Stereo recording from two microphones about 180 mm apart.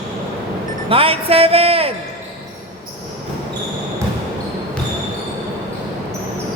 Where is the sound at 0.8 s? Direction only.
30° right (ahead or behind).